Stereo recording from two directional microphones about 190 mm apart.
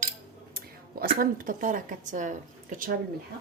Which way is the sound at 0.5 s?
50° right (ahead or behind).